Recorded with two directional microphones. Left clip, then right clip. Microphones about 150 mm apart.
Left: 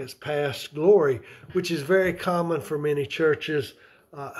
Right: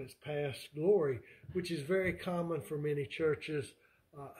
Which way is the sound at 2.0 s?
45° left (ahead or behind).